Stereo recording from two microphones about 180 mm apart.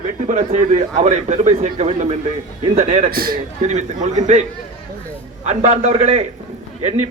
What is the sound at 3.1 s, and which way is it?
Speech, 55° right (ahead or behind).